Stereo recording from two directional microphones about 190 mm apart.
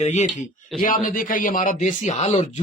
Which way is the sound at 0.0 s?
35° left (ahead or behind).